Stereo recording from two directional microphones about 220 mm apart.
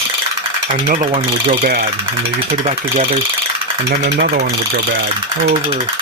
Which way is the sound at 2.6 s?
25° right (ahead or behind).